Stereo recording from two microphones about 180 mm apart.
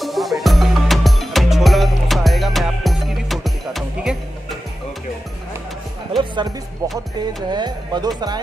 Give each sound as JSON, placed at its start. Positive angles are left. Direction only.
{"t": 0.0, "sound": "music", "side_deg": 0}
{"t": 6.1, "sound": "music", "side_deg": -25}
{"t": 7.5, "sound": "speech", "side_deg": -25}